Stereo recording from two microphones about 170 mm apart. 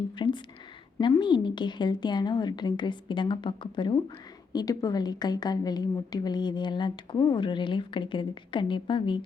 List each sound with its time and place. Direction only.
0.2 s a woman's voice: 25° left (ahead or behind)